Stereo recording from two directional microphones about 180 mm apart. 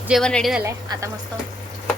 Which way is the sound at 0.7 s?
20° right (ahead or behind).